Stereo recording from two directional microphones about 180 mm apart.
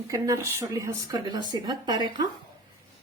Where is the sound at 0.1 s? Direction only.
20° right (ahead or behind).